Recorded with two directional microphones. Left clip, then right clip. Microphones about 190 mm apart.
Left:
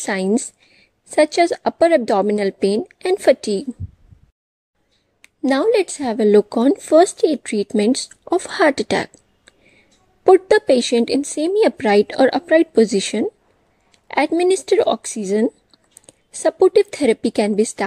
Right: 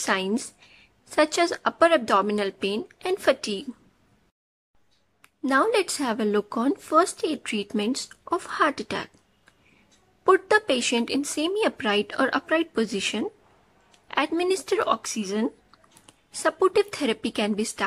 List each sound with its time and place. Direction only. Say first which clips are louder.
0.0 s speech: left 5 dB; 25° left (ahead or behind)
5.2 s speech: left 5 dB; 20° left (ahead or behind)
10.2 s speech: left 7 dB; 20° left (ahead or behind)
15.4 s a sound: left 9 dB; 15° left (ahead or behind)
16.4 s speech: left 8 dB; 20° left (ahead or behind)